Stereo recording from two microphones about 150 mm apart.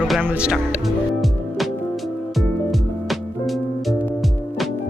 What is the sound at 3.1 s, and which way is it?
Music, centre (ahead or behind).